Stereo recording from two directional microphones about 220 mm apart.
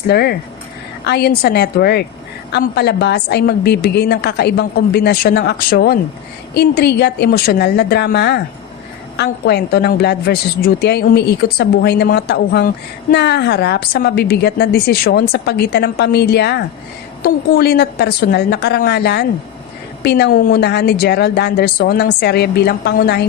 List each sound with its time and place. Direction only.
0.1 s a woman's voice: 45° left (ahead or behind)